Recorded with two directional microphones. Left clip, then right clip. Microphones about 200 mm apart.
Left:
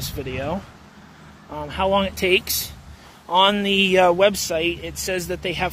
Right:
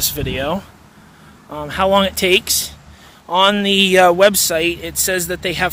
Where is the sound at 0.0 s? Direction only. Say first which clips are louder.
Right 7 dB; 35° right (ahead or behind).